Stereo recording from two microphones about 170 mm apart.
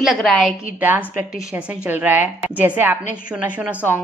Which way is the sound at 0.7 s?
10° right (ahead or behind).